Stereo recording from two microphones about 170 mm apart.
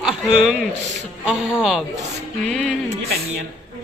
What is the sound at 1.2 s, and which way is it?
Speech, 5° right (ahead or behind).